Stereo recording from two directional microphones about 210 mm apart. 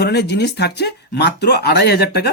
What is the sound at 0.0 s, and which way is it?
Speech, 50° left (ahead or behind).